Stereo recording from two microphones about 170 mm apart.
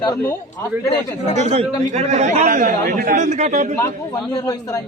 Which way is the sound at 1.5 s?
40° right (ahead or behind).